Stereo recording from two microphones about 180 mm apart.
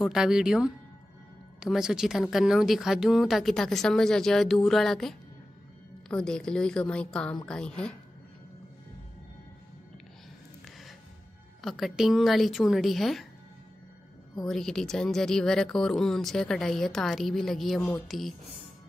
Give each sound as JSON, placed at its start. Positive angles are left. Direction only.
{"t": 0.0, "sound": "speech", "side_deg": -5}
{"t": 11.6, "sound": "speech", "side_deg": 0}
{"t": 14.4, "sound": "speech", "side_deg": 0}